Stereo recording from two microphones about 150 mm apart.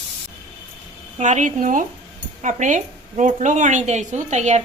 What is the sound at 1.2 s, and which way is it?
Speech, 55° right (ahead or behind).